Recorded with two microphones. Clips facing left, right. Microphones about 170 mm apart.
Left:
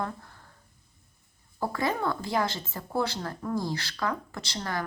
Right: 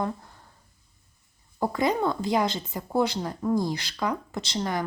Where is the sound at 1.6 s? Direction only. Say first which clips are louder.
Right 4 dB; 20° right (ahead or behind).